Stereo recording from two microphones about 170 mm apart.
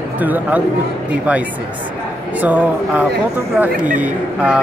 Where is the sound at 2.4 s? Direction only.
10° right (ahead or behind).